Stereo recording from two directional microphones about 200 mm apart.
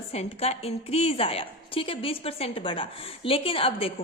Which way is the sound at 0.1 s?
30° left (ahead or behind).